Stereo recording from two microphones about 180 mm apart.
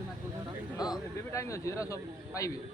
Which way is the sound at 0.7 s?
20° left (ahead or behind).